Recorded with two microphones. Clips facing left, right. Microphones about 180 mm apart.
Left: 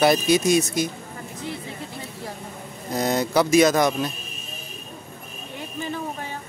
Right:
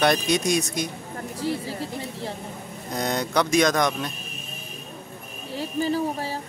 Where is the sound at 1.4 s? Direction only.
35° right (ahead or behind).